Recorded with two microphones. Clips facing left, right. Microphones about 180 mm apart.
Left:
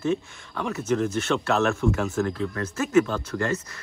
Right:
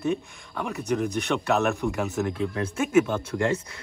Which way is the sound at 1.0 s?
15° right (ahead or behind).